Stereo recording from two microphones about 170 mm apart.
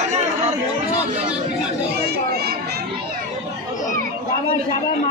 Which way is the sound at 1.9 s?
70° right (ahead or behind).